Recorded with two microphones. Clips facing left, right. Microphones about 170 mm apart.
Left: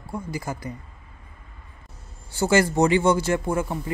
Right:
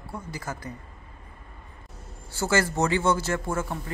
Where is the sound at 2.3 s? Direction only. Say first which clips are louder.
Left 5 dB; 15° left (ahead or behind).